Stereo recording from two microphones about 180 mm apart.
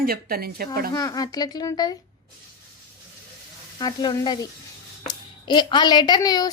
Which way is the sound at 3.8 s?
25° left (ahead or behind).